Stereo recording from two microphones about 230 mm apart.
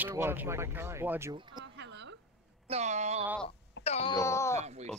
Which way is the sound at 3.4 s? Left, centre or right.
Left.